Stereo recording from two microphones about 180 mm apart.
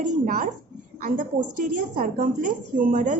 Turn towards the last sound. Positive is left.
turn(degrees=-45)  # may be behind; listen again after turning